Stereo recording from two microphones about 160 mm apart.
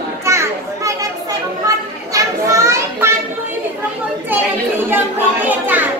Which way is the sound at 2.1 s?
20° right (ahead or behind).